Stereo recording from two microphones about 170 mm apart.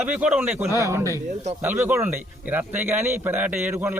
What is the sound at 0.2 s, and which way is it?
A man's voice, 5° right (ahead or behind).